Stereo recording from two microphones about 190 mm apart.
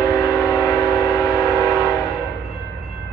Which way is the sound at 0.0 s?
15° left (ahead or behind).